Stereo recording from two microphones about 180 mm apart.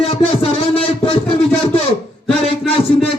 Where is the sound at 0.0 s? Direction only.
30° left (ahead or behind).